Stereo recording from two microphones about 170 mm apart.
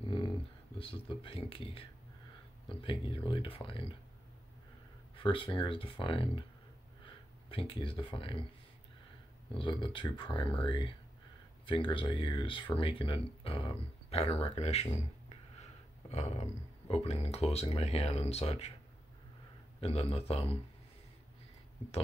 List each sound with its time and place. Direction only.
0.7 s speech: 30° left (ahead or behind)
5.1 s speech: 30° left (ahead or behind)
7.4 s speech: 30° left (ahead or behind)
9.6 s speech: 30° left (ahead or behind)
19.8 s speech: 35° left (ahead or behind)